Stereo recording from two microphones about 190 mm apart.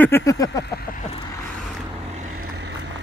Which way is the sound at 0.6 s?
55° left (ahead or behind).